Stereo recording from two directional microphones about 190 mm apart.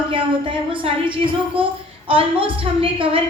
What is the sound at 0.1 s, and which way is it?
A woman's voice, 25° right (ahead or behind).